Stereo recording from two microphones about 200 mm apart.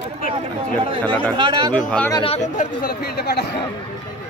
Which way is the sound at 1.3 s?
20° right (ahead or behind).